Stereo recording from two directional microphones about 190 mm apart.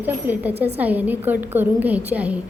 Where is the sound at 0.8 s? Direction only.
10° right (ahead or behind).